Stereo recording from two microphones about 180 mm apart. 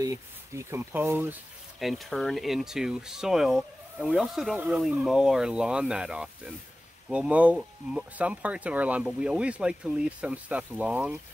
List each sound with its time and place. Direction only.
0.0 s speech: 15° right (ahead or behind)